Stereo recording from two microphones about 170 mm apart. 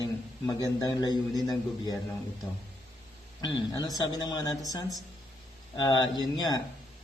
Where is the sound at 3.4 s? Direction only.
25° left (ahead or behind).